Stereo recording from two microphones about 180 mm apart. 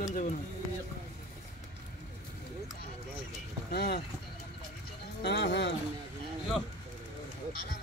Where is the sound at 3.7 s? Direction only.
60° left (ahead or behind).